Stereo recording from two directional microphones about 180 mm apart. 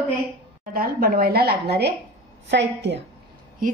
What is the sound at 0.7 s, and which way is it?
A woman's voice, 55° right (ahead or behind).